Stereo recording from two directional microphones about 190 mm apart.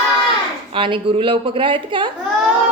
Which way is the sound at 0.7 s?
25° right (ahead or behind).